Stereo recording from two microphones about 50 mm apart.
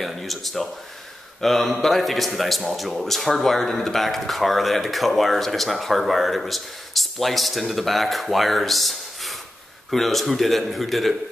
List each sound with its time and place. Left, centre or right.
0.0 s a man's voice: centre